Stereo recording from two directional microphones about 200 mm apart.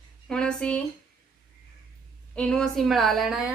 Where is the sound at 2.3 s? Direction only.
5° left (ahead or behind).